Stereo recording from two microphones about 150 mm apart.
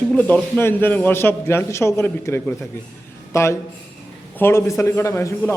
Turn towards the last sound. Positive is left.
turn(degrees=20)  # may be behind; listen again after turning